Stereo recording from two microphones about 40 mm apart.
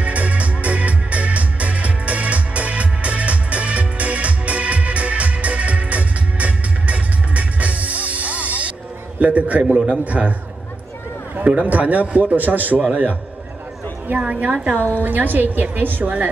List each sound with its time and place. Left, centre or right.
0.0 s music: right
9.2 s a man's voice: right
11.4 s a man's voice: right
14.1 s a man's voice: right
15.0 s a man's voice: right